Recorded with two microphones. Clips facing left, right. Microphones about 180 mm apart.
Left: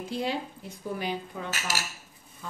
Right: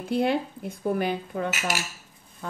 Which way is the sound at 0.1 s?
60° right (ahead or behind).